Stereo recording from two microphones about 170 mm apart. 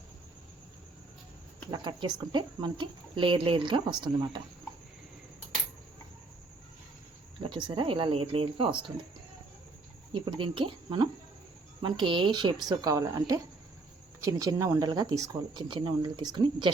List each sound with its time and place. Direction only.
1.7 s speech: 25° right (ahead or behind)
7.4 s speech: 30° right (ahead or behind)
10.1 s speech: 30° right (ahead or behind)